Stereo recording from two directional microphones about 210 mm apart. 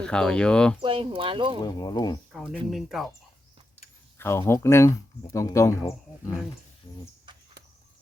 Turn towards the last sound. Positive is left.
turn(degrees=25)  # may be behind; listen again after turning